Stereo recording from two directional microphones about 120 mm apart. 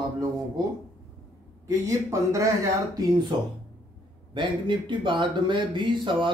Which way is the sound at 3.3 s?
45° right (ahead or behind).